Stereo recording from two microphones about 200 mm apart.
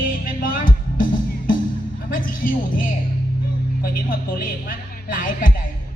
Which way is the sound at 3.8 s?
45° left (ahead or behind).